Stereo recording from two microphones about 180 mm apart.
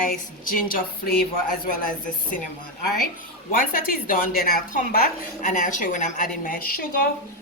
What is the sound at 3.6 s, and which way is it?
A woman's voice, 50° left (ahead or behind).